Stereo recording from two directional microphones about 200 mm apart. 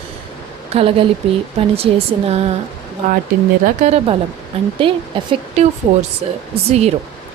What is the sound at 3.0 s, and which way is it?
A woman's voice, 40° right (ahead or behind).